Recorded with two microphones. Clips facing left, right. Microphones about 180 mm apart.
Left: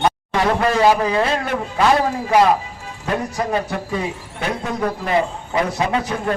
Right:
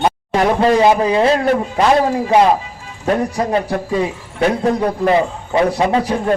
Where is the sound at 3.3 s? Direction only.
30° right (ahead or behind).